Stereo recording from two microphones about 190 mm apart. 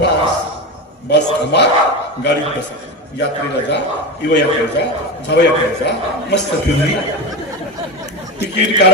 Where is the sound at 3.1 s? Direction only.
65° left (ahead or behind).